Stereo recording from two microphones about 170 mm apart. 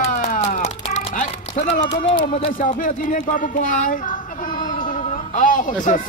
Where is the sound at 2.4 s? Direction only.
55° left (ahead or behind).